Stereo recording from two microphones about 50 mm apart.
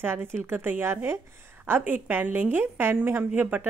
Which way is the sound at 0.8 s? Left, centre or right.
Right.